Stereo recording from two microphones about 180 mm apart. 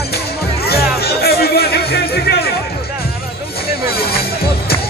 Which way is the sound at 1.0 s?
60° left (ahead or behind).